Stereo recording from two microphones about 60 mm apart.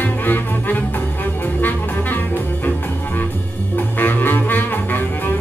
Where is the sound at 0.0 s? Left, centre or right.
Left.